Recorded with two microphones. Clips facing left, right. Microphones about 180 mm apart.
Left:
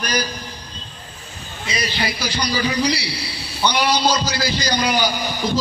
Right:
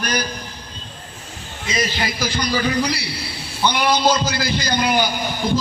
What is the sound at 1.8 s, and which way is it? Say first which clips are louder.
A man's voice: right 2 dB; 45° right (ahead or behind).